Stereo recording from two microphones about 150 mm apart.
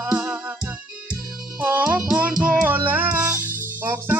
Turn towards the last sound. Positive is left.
turn(degrees=-15)  # may be behind; listen again after turning